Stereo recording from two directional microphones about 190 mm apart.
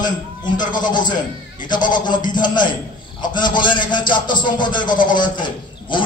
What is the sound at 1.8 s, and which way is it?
Speech, 45° left (ahead or behind).